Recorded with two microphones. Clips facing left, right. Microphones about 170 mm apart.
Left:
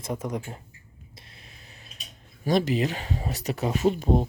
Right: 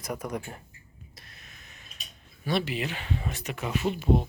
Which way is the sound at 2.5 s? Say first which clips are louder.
Left 6 dB; 40° left (ahead or behind).